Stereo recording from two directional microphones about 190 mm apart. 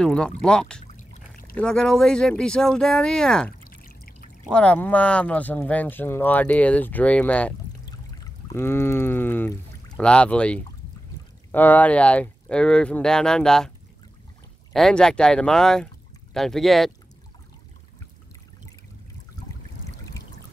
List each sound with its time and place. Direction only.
0.0 s speech: 5° left (ahead or behind)
0.8 s boat: 40° left (ahead or behind)
1.6 s speech: 5° left (ahead or behind)
3.8 s trickle: 50° left (ahead or behind)
4.5 s speech: 5° left (ahead or behind)
8.1 s a sound: 20° left (ahead or behind)
9.9 s speech: 5° left (ahead or behind)
14.7 s speech: centre (ahead or behind)